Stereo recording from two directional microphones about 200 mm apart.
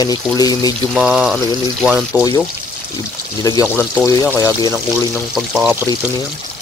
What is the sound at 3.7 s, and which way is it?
Speech, 5° right (ahead or behind).